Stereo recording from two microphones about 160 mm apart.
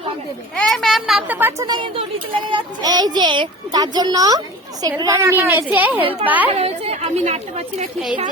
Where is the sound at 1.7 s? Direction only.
30° right (ahead or behind); by 6.5 s 10° right (ahead or behind).